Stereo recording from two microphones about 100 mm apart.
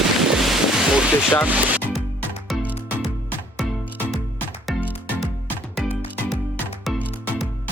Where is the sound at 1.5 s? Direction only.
15° right (ahead or behind).